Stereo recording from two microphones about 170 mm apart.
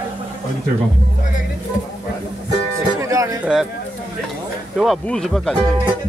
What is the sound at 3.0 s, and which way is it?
Music, 20° right (ahead or behind).